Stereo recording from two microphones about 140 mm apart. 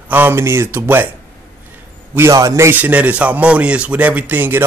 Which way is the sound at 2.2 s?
20° right (ahead or behind).